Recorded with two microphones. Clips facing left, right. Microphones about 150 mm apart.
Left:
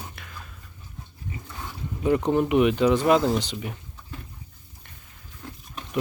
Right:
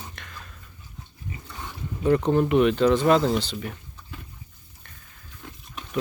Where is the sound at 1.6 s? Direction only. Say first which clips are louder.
Even; 10° left (ahead or behind).